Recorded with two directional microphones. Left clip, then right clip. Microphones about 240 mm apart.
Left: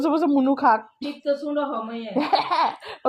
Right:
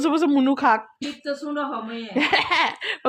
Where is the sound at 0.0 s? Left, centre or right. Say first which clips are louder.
Right 1 dB; right.